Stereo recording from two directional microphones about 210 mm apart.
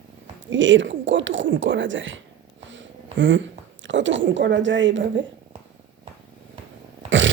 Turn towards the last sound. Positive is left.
turn(degrees=-65)  # may be behind; listen again after turning